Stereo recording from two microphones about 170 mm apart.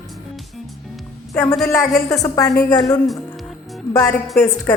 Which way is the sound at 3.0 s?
Centre (ahead or behind).